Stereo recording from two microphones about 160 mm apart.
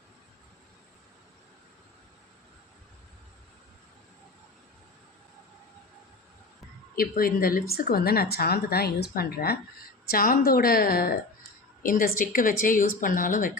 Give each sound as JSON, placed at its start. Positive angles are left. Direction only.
{"t": 6.9, "sound": "a woman's voice", "side_deg": 65}
{"t": 10.1, "sound": "a woman's voice", "side_deg": 65}